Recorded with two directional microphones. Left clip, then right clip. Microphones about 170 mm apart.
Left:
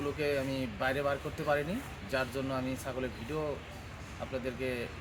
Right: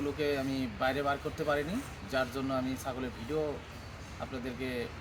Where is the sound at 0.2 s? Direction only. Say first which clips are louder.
Left 1 dB; 20° left (ahead or behind).